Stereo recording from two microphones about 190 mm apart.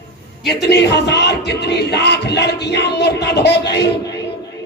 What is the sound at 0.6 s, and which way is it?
Music, 65° left (ahead or behind).